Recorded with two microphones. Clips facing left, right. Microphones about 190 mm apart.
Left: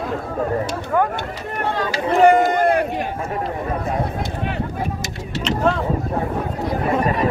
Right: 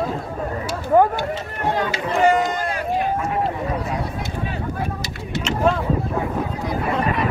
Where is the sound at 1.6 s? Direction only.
15° right (ahead or behind).